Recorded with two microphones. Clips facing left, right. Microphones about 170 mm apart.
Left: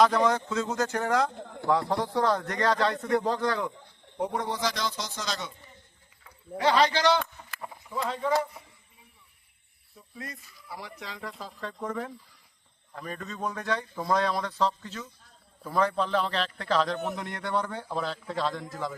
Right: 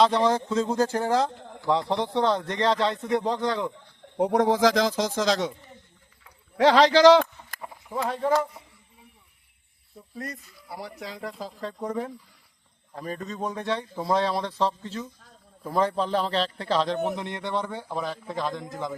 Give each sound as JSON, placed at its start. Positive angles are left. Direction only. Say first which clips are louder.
{"t": 0.0, "sound": "speech", "louder": "right 2 dB", "side_deg": -30}
{"t": 4.2, "sound": "speech", "louder": "right 9 dB", "side_deg": -85}
{"t": 6.6, "sound": "speech", "louder": "right 7 dB", "side_deg": -90}
{"t": 10.2, "sound": "a man's voice", "louder": "right 5 dB", "side_deg": -40}